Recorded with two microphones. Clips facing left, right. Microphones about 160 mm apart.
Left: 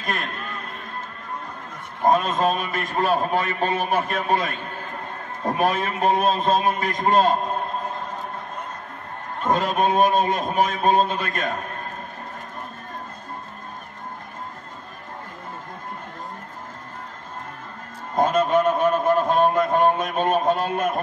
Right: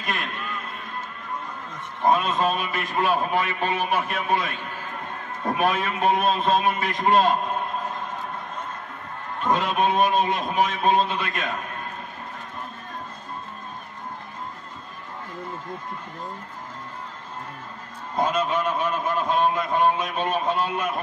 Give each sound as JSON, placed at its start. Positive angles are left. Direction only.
{"t": 0.0, "sound": "a sound", "side_deg": 40}
{"t": 2.0, "sound": "a man's voice", "side_deg": 45}
{"t": 9.4, "sound": "a man's voice", "side_deg": 40}
{"t": 18.1, "sound": "a man's voice", "side_deg": 50}